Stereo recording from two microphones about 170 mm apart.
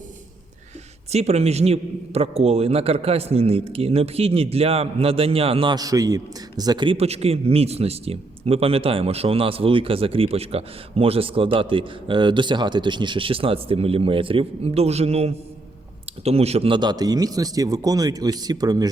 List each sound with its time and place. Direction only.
1.1 s a man's voice: 40° right (ahead or behind); by 18.9 s 20° right (ahead or behind)